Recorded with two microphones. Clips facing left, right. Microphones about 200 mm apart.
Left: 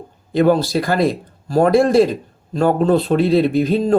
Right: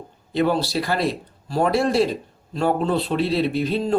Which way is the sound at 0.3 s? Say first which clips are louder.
Left 6 dB; 45° left (ahead or behind).